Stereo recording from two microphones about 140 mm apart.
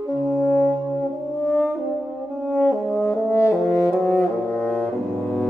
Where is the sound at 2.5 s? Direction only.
10° left (ahead or behind).